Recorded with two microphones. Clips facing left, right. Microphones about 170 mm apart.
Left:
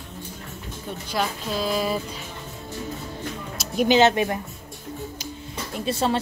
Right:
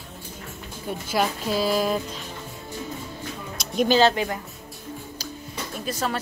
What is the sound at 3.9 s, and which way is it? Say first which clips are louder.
Speech: left 2 dB; 20° left (ahead or behind).